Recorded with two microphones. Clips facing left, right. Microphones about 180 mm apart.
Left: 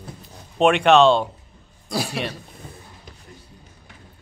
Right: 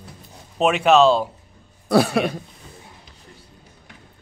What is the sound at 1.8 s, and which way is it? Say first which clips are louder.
Speech: right 9 dB; 60° right (ahead or behind).